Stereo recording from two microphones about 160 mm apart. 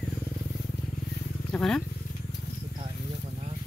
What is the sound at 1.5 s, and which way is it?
Speech, 5° left (ahead or behind).